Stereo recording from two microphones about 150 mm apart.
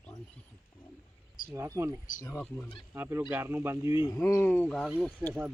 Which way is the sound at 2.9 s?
15° right (ahead or behind).